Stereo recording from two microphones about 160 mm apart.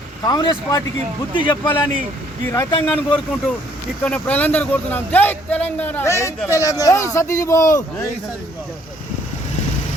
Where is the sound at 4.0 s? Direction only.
10° left (ahead or behind).